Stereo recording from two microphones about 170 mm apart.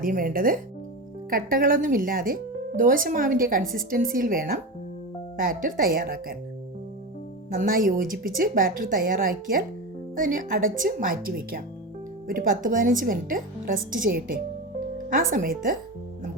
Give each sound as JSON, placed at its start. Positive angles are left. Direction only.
{"t": 0.0, "sound": "a woman's voice", "side_deg": -55}
{"t": 7.5, "sound": "a woman's voice", "side_deg": -55}